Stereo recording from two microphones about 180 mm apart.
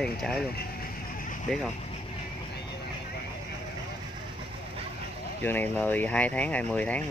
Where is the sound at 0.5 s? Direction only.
55° left (ahead or behind).